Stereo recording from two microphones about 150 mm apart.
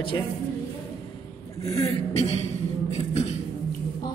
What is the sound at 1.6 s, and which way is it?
Speech, 20° left (ahead or behind).